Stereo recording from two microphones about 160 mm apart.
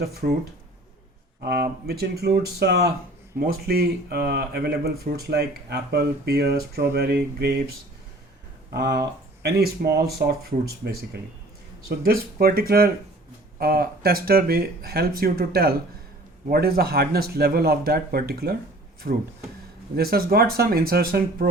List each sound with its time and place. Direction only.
0.0 s speech: 75° right (ahead or behind)
1.4 s speech: 85° right
3.3 s speech: 70° right (ahead or behind)
8.7 s speech: 90° right
10.2 s speech: 80° right
11.9 s speech: 75° right (ahead or behind)
19.1 s speech: 60° right (ahead or behind)
20.0 s speech: 70° right (ahead or behind)